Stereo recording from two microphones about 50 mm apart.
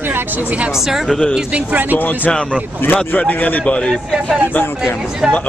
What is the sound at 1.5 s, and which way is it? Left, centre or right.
Speech, right.